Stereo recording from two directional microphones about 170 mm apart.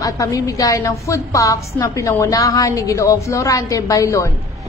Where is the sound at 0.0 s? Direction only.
20° left (ahead or behind).